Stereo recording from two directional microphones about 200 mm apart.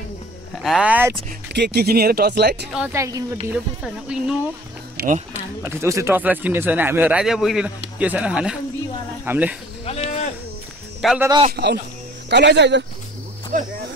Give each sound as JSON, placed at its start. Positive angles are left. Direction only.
{"t": 0.6, "sound": "speech", "side_deg": -5}
{"t": 1.5, "sound": "speech", "side_deg": -55}
{"t": 2.7, "sound": "speech", "side_deg": -10}
{"t": 3.8, "sound": "speech", "side_deg": -5}
{"t": 4.9, "sound": "a sound", "side_deg": -45}
{"t": 5.6, "sound": "speech", "side_deg": -10}
{"t": 9.8, "sound": "a sound", "side_deg": 30}
{"t": 11.0, "sound": "speech", "side_deg": 0}
{"t": 11.5, "sound": "speech", "side_deg": -55}
{"t": 13.5, "sound": "speech", "side_deg": -40}